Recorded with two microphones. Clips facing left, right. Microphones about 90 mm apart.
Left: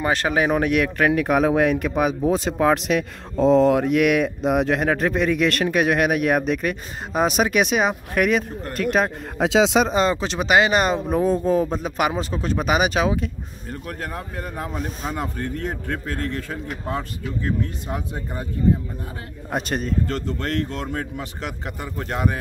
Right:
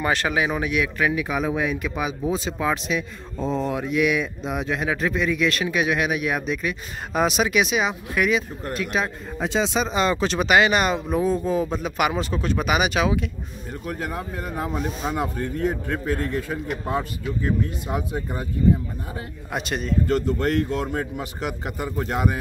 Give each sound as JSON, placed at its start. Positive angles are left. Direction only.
{"t": 0.0, "sound": "speech", "side_deg": 35}
{"t": 0.5, "sound": "speech", "side_deg": 60}
{"t": 9.4, "sound": "speech", "side_deg": 90}
{"t": 9.8, "sound": "speech", "side_deg": 35}
{"t": 10.2, "sound": "speech", "side_deg": 25}
{"t": 13.8, "sound": "a man's voice", "side_deg": -5}
{"t": 19.5, "sound": "speech", "side_deg": 40}
{"t": 20.1, "sound": "a man's voice", "side_deg": -10}